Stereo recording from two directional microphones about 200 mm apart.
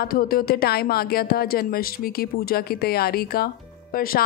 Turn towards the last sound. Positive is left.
turn(degrees=45)  # may be behind; listen again after turning